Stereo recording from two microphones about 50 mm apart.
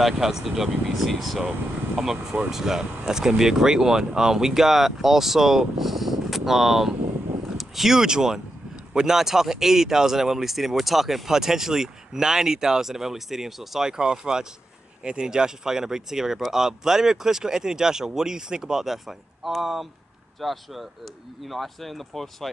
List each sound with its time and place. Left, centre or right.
0.0 s speech: centre